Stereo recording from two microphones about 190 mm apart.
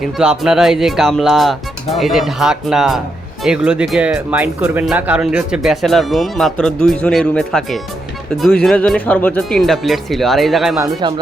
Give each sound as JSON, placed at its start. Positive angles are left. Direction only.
{"t": 0.0, "sound": "speech", "side_deg": -5}
{"t": 11.0, "sound": "speech", "side_deg": -25}